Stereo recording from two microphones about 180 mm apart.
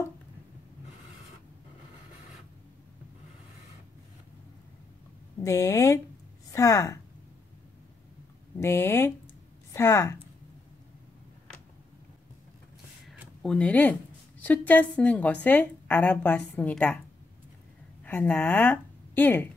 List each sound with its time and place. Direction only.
5.4 s a woman's voice: 15° left (ahead or behind)
8.5 s a woman's voice: 15° left (ahead or behind)
13.1 s a sound: centre (ahead or behind)
14.4 s a woman's voice: 10° left (ahead or behind)
18.0 s a woman's voice: 10° left (ahead or behind)